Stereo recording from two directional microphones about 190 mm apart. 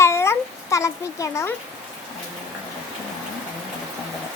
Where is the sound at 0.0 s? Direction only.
15° left (ahead or behind).